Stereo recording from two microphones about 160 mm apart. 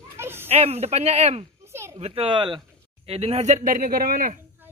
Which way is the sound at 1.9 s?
35° right (ahead or behind).